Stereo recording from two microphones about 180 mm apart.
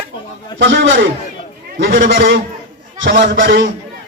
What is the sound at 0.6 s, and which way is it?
Speech, 90° right.